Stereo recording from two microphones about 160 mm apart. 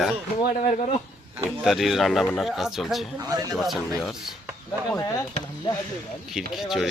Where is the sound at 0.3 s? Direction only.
40° left (ahead or behind).